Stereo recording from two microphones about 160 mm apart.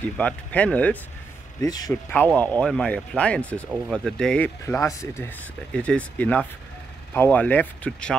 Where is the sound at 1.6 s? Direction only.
25° left (ahead or behind).